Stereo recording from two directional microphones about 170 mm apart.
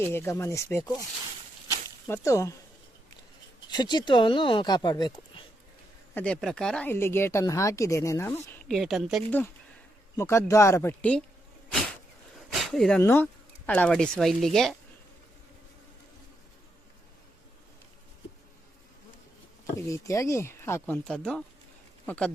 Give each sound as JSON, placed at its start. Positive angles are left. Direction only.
{"t": 0.0, "sound": "speech", "side_deg": 15}
{"t": 1.6, "sound": "snake", "side_deg": 15}
{"t": 3.7, "sound": "speech", "side_deg": 25}
{"t": 6.1, "sound": "speech", "side_deg": 5}
{"t": 10.2, "sound": "speech", "side_deg": 15}
{"t": 12.5, "sound": "a sound", "side_deg": 0}
{"t": 13.0, "sound": "speech", "side_deg": 15}
{"t": 19.9, "sound": "speech", "side_deg": 15}